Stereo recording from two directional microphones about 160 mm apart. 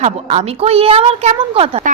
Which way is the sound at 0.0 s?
45° right (ahead or behind).